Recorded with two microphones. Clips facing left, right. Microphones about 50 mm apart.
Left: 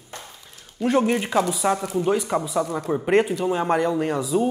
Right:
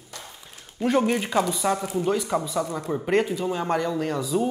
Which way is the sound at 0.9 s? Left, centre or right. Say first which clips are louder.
Left 2 dB; centre.